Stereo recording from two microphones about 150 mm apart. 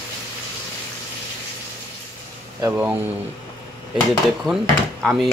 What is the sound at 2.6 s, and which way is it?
Speech, 10° right (ahead or behind).